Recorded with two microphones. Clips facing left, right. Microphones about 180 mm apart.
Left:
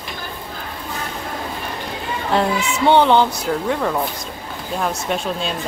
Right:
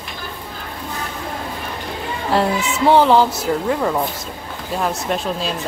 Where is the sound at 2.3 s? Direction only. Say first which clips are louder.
Right 1 dB; centre (ahead or behind).